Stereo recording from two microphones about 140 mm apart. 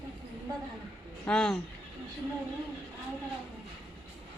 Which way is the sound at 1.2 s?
5° left (ahead or behind).